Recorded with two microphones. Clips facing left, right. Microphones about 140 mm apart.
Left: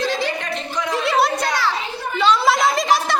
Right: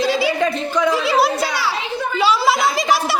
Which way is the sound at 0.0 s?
10° right (ahead or behind).